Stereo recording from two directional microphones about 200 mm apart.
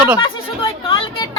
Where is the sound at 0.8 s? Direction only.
25° left (ahead or behind).